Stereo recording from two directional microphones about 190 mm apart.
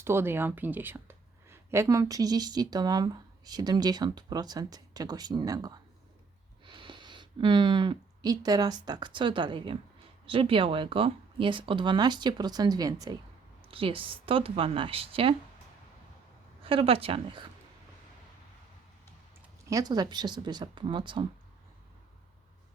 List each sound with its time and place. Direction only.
0.0 s speech: 10° right (ahead or behind); by 15.4 s 30° right (ahead or behind)
16.6 s speech: 30° right (ahead or behind)
19.7 s speech: 20° right (ahead or behind)